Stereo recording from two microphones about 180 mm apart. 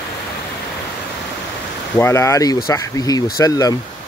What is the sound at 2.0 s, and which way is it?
Speech, 15° left (ahead or behind).